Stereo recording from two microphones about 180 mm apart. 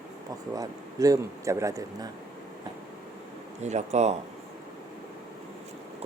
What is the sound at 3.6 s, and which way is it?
Speech, 40° right (ahead or behind).